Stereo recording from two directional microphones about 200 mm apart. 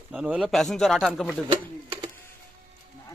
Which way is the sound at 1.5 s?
25° right (ahead or behind).